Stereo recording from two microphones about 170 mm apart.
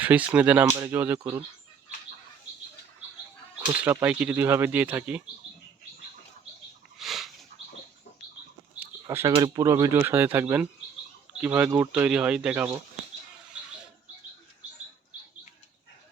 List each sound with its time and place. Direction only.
0.0 s speech: 10° right (ahead or behind)
3.8 s speech: 10° right (ahead or behind)
7.0 s a sound: centre (ahead or behind)
8.8 s bird: 15° right (ahead or behind)
9.3 s speech: 25° right (ahead or behind); by 12.7 s 10° right (ahead or behind)
13.5 s a sound: 5° right (ahead or behind)